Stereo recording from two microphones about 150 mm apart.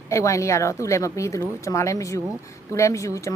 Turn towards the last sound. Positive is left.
turn(degrees=20)  # may be behind; listen again after turning